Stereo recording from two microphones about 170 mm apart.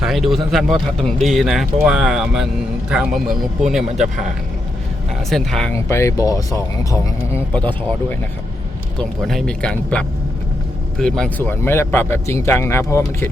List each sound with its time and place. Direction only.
0.0 s a man's voice: centre (ahead or behind)
5.3 s a man's voice: centre (ahead or behind)
5.7 s speech: 15° left (ahead or behind)
7.5 s speech: 10° left (ahead or behind)
9.0 s a man's voice: 5° left (ahead or behind)
11.2 s speech: 10° left (ahead or behind)